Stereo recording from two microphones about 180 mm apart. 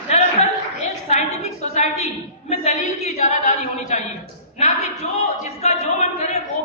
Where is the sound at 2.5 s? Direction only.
35° left (ahead or behind).